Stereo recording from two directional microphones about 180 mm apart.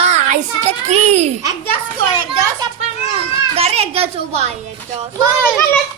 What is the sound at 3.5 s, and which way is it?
Speech, 35° right (ahead or behind).